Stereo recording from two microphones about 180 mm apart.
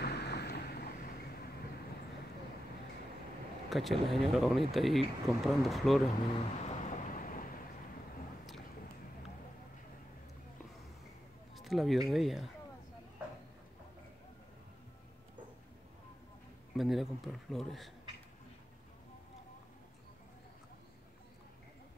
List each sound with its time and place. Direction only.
0.0 s boat: 65° left (ahead or behind)
3.7 s speech: centre (ahead or behind)
6.3 s vehicle: 35° left (ahead or behind)
11.5 s a sound: centre (ahead or behind)
12.1 s speech: centre (ahead or behind)
16.7 s speech: centre (ahead or behind)